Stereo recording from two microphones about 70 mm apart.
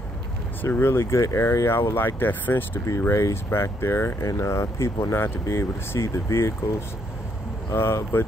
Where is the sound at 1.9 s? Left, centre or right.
Left.